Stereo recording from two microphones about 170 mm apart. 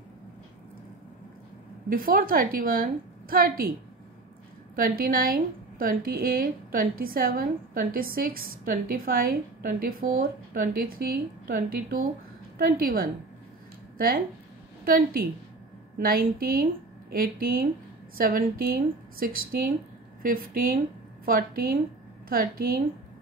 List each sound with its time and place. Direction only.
1.9 s a woman's voice: 55° right (ahead or behind)
4.7 s a woman's voice: 55° right (ahead or behind)